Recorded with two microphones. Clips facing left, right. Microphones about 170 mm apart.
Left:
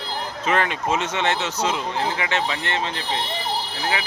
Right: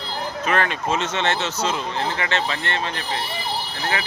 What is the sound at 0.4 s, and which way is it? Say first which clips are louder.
Speech: left 1 dB; 15° left (ahead or behind).